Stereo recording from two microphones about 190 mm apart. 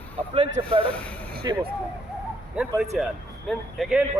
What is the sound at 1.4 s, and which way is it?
Speech, 25° right (ahead or behind).